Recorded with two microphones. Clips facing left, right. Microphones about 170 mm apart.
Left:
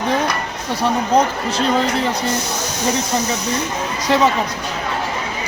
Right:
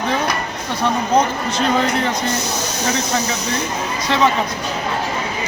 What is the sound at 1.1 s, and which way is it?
Speech, 35° left (ahead or behind).